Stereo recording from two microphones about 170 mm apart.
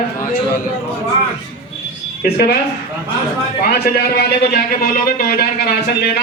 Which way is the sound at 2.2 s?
70° left (ahead or behind).